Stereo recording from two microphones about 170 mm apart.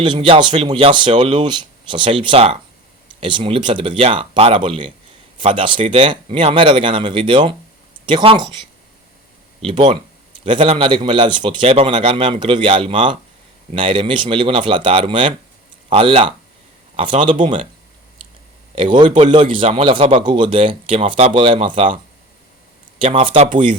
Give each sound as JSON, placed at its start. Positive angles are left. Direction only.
{"t": 0.0, "sound": "speech", "side_deg": -30}
{"t": 9.6, "sound": "speech", "side_deg": -30}
{"t": 17.4, "sound": "speech", "side_deg": -45}
{"t": 18.7, "sound": "speech", "side_deg": -30}